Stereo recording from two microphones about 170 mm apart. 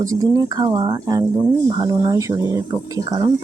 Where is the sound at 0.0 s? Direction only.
20° right (ahead or behind).